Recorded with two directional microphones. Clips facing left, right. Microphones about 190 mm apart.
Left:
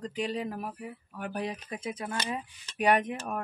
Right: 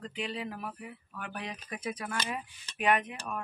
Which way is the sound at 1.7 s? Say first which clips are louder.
Left 1 dB; 25° left (ahead or behind).